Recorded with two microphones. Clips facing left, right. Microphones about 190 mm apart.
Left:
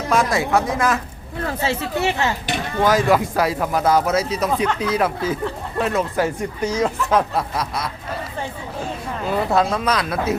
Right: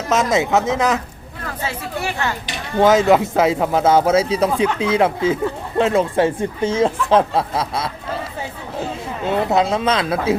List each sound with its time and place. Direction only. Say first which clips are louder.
0.1 s speech: right 2 dB; 20° right (ahead or behind)
1.5 s speech: left 3 dB; 25° left (ahead or behind)
2.8 s speech: right 4 dB; 25° right (ahead or behind)
9.2 s speech: right 2 dB; 20° right (ahead or behind)